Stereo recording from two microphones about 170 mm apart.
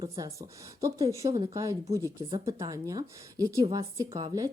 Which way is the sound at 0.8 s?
20° right (ahead or behind).